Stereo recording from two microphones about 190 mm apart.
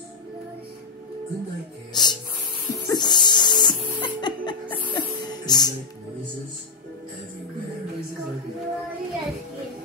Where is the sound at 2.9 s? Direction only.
20° left (ahead or behind).